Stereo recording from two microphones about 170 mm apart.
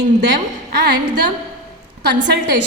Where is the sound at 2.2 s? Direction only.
90° right.